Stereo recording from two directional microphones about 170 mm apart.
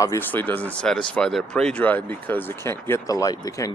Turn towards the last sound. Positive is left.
turn(degrees=20)  # may be behind; listen again after turning